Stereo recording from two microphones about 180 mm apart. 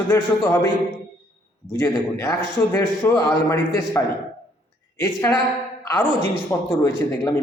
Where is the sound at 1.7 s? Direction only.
15° left (ahead or behind).